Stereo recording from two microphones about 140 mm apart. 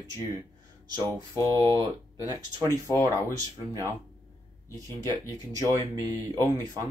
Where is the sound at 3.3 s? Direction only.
25° right (ahead or behind).